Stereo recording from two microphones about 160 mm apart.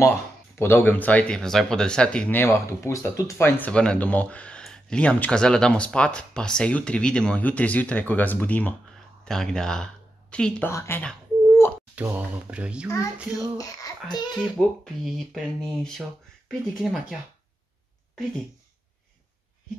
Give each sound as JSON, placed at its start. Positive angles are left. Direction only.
{"t": 0.0, "sound": "speech", "side_deg": 15}
{"t": 10.7, "sound": "a sound", "side_deg": 15}
{"t": 11.9, "sound": "speech", "side_deg": -10}
{"t": 13.6, "sound": "speech", "side_deg": 20}
{"t": 14.3, "sound": "speech", "side_deg": 0}